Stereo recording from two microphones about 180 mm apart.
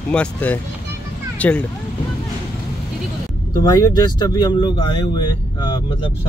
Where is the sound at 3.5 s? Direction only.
20° left (ahead or behind).